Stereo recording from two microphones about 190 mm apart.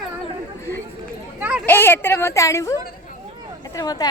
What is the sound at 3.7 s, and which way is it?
Speech, 20° left (ahead or behind).